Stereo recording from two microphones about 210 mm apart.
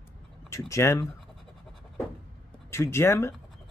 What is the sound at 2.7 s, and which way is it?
Speech, 10° left (ahead or behind).